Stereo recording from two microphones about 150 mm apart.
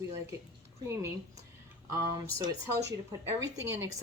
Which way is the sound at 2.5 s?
25° right (ahead or behind).